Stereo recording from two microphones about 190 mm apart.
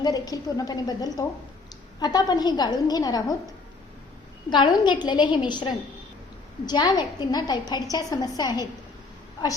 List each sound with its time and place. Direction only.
0.0 s a woman's voice: 20° left (ahead or behind)
4.4 s a woman's voice: 25° left (ahead or behind)